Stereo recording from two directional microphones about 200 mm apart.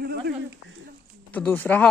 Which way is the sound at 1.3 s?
10° left (ahead or behind).